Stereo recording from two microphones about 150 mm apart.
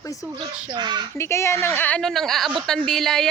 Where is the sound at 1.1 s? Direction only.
20° left (ahead or behind).